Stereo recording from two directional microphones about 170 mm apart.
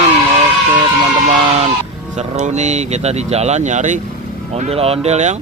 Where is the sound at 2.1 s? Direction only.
45° right (ahead or behind).